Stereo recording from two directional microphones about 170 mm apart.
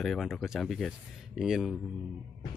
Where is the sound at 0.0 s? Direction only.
Centre (ahead or behind).